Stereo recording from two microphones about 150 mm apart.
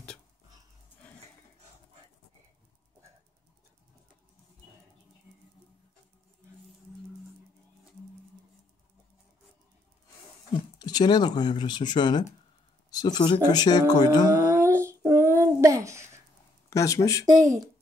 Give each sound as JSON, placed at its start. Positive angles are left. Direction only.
{"t": 10.8, "sound": "speech", "side_deg": 30}
{"t": 14.2, "sound": "a sound", "side_deg": -15}
{"t": 16.7, "sound": "speech", "side_deg": 20}